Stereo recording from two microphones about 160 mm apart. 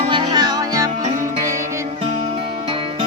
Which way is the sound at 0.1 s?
25° right (ahead or behind).